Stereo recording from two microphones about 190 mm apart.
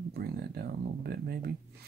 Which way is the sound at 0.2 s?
55° right (ahead or behind).